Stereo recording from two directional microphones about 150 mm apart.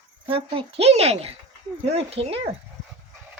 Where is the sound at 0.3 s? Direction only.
35° right (ahead or behind).